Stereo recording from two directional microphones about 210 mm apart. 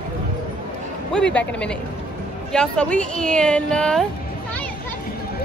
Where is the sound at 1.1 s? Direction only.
5° left (ahead or behind).